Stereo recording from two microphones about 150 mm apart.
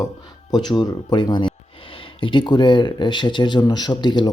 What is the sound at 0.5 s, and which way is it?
Speech, 30° left (ahead or behind).